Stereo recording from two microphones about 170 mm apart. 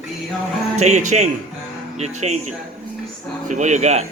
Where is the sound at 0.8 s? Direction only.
45° right (ahead or behind).